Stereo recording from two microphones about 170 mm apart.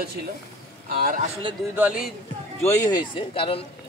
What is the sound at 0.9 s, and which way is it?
Speech, 55° right (ahead or behind).